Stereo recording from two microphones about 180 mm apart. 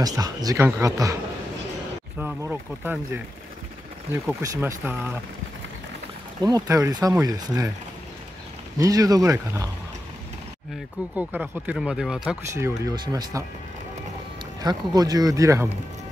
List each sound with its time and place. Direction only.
0.0 s speech: 20° right (ahead or behind)
2.1 s speech: 10° right (ahead or behind)
4.4 s speech: 15° right (ahead or behind)
6.4 s speech: 20° right (ahead or behind)
8.7 s speech: 20° right (ahead or behind)
11.1 s speech: 10° right (ahead or behind)
12.5 s speech: 15° right (ahead or behind)
14.6 s speech: 20° right (ahead or behind)